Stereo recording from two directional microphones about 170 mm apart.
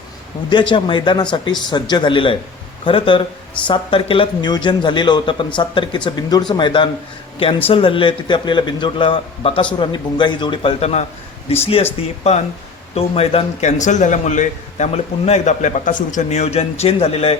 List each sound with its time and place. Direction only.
0.7 s a man's voice: 25° left (ahead or behind)